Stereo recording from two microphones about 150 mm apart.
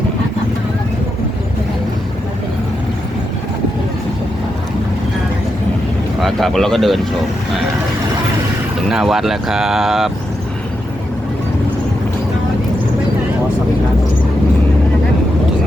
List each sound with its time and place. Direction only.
6.2 s speech: centre (ahead or behind)
8.9 s speech: 5° right (ahead or behind)